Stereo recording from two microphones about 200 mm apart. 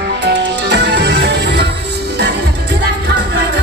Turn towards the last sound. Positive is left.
turn(degrees=-55)  # may be behind; listen again after turning